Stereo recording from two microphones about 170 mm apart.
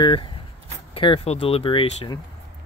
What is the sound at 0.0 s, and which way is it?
Speech, 25° left (ahead or behind).